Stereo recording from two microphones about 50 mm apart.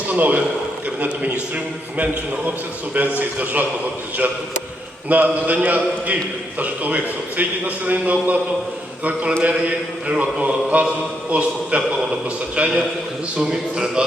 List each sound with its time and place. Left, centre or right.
0.1 s a man's voice: right
2.9 s a man's voice: right
5.0 s a man's voice: right
9.4 s a man's voice: right